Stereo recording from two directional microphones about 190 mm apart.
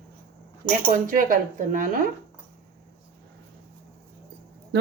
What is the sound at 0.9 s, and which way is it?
Speech, 45° right (ahead or behind).